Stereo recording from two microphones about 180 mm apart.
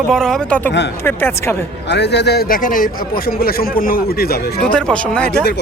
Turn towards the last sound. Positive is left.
turn(degrees=5)  # may be behind; listen again after turning